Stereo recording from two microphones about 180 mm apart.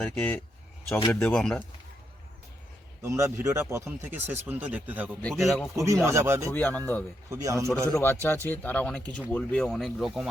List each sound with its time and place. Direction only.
0.0 s speech: 5° left (ahead or behind)
3.0 s speech: 15° right (ahead or behind); by 5.6 s centre (ahead or behind)
5.7 s speech: 15° right (ahead or behind)
6.5 s speech: 10° left (ahead or behind)
7.3 s speech: 15° right (ahead or behind)
7.9 s speech: 10° left (ahead or behind)